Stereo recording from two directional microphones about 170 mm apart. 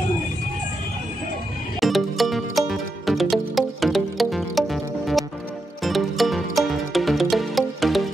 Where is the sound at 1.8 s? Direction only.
Centre (ahead or behind).